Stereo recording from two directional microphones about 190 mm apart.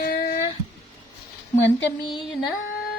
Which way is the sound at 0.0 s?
50° left (ahead or behind).